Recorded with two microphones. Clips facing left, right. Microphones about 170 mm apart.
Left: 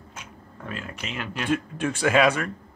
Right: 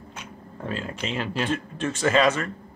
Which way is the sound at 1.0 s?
30° right (ahead or behind).